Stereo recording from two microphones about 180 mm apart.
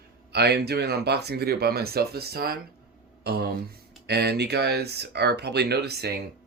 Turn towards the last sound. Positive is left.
turn(degrees=-65)  # may be behind; listen again after turning